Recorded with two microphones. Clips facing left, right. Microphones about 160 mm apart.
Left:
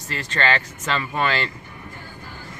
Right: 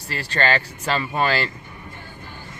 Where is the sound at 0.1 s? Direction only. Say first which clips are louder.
Right 1 dB; 35° right (ahead or behind).